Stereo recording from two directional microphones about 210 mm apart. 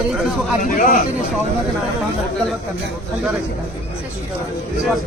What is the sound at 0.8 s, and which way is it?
Speech, 40° left (ahead or behind).